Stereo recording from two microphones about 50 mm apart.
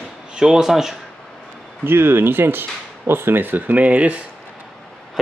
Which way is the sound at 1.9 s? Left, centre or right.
Right.